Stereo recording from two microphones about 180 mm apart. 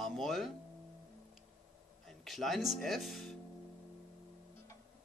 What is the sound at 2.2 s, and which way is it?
A man's voice, centre (ahead or behind).